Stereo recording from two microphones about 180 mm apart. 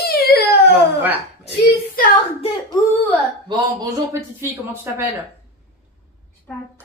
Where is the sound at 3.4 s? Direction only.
25° right (ahead or behind).